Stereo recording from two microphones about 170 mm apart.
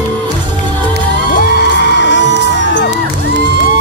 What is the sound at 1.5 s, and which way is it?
Music, 90° left.